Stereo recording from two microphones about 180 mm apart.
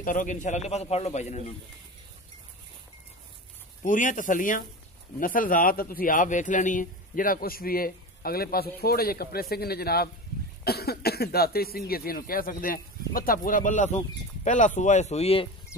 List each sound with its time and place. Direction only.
0.0 s a man's voice: 45° left (ahead or behind)
3.8 s a man's voice: 45° left (ahead or behind)